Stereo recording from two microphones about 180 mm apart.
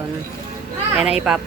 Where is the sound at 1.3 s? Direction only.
5° right (ahead or behind).